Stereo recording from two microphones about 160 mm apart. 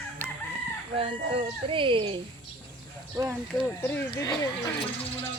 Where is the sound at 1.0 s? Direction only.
35° right (ahead or behind).